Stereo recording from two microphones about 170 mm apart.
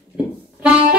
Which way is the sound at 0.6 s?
5° right (ahead or behind).